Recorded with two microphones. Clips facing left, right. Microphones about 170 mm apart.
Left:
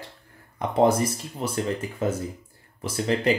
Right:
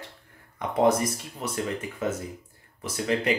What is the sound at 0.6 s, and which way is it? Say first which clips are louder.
Speech: left 2 dB; 30° left (ahead or behind).